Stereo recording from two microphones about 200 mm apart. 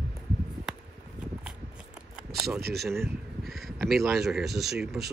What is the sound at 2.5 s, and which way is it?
Speech, 55° right (ahead or behind).